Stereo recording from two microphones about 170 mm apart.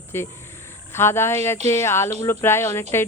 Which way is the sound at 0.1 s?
15° left (ahead or behind).